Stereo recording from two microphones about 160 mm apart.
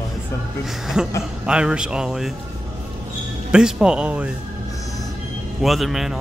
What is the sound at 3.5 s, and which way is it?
Speech, 5° right (ahead or behind).